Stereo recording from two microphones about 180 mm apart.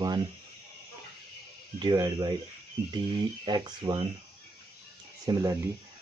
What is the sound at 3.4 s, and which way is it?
Speech, 25° right (ahead or behind).